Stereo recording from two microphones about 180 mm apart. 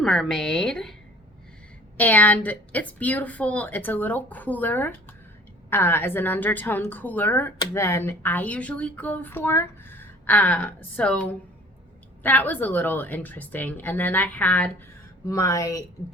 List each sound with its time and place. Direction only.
0.0 s a woman's voice: centre (ahead or behind)
2.0 s speech: 10° left (ahead or behind)